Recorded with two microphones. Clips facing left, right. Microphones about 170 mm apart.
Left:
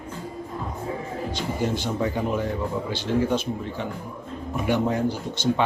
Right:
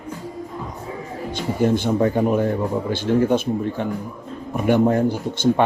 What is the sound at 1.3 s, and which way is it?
Speech, 55° right (ahead or behind).